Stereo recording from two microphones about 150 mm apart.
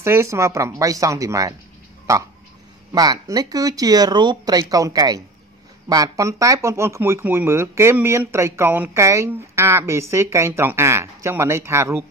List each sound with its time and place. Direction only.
0.0 s speech: 15° right (ahead or behind)
2.9 s speech: 25° right (ahead or behind)